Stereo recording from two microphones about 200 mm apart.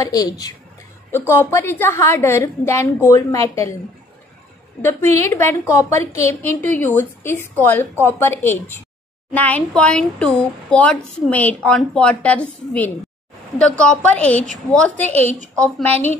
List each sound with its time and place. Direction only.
0.0 s a woman's voice: 20° left (ahead or behind)
4.8 s a woman's voice: 10° left (ahead or behind)
15.2 s a woman's voice: 35° right (ahead or behind)
15.6 s a woman's voice: 10° left (ahead or behind)